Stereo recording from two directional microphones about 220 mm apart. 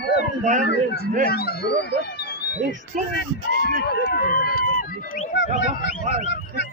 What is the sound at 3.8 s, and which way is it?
Speech, 45° left (ahead or behind).